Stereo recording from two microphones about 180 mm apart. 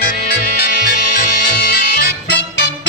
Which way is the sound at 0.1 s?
60° left (ahead or behind).